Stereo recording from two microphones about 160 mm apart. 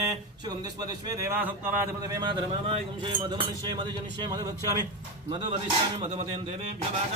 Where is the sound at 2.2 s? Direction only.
35° right (ahead or behind).